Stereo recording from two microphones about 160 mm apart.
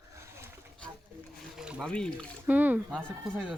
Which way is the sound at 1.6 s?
5° right (ahead or behind).